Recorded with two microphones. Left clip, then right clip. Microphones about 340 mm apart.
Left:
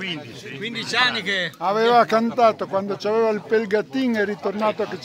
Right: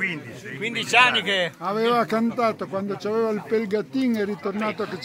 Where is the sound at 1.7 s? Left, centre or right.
Left.